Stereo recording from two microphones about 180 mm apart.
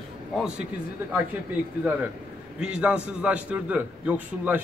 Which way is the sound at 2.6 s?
5° right (ahead or behind).